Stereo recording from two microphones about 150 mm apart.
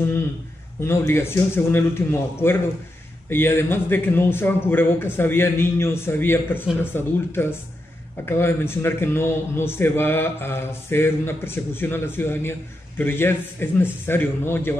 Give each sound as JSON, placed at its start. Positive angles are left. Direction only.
{"t": 0.7, "sound": "a man's voice", "side_deg": 15}